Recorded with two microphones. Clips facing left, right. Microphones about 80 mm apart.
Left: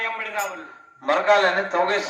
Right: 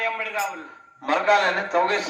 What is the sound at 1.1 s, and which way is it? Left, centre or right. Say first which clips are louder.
Speech: left 2 dB; left.